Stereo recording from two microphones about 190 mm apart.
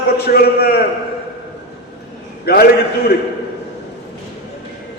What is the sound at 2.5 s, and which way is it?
Speech, 55° left (ahead or behind).